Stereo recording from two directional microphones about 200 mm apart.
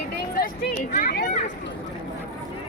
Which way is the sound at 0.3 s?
45° left (ahead or behind).